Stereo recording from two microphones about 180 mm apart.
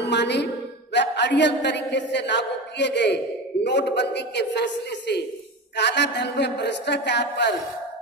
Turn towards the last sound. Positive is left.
turn(degrees=75)  # may be behind; listen again after turning